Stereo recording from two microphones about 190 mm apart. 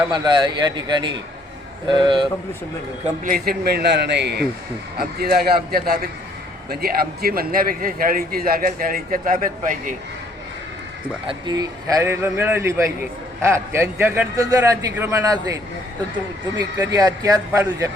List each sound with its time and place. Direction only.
0.1 s speech: 25° right (ahead or behind)
3.2 s a man's voice: 50° right (ahead or behind)
11.3 s a man's voice: 20° right (ahead or behind)
16.7 s a man's voice: 20° right (ahead or behind)